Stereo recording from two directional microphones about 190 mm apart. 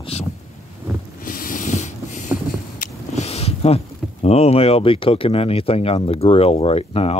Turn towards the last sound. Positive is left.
turn(degrees=30)  # may be behind; listen again after turning